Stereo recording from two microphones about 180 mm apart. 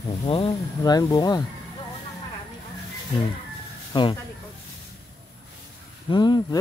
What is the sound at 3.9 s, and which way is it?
Speech, 25° left (ahead or behind).